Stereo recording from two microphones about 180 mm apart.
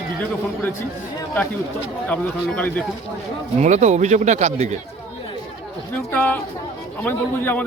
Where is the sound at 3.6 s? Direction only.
40° right (ahead or behind).